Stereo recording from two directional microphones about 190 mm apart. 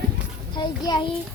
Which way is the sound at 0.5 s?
25° left (ahead or behind).